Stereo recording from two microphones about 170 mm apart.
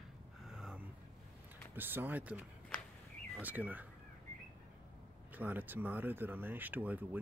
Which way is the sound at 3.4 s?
10° right (ahead or behind).